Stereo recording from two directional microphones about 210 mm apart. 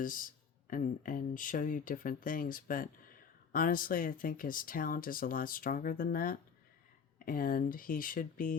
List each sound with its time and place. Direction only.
0.0 s speech: 40° left (ahead or behind)